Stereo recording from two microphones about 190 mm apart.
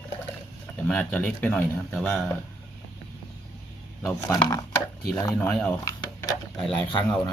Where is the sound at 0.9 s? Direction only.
5° left (ahead or behind).